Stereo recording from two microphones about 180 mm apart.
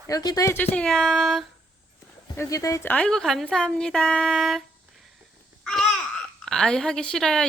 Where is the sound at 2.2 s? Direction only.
15° left (ahead or behind); by 4.6 s centre (ahead or behind).